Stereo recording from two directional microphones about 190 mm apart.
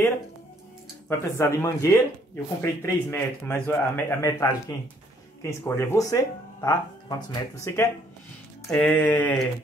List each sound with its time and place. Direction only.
1.0 s speech: 15° left (ahead or behind)
4.3 s speech: 20° left (ahead or behind)